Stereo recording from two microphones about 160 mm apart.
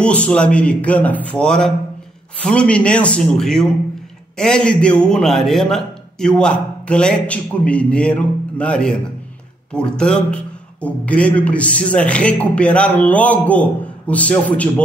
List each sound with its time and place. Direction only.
0.0 s a man's voice: 5° left (ahead or behind)